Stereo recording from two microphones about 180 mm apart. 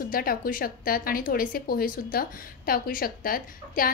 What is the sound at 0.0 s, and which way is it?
A woman's voice, 55° left (ahead or behind).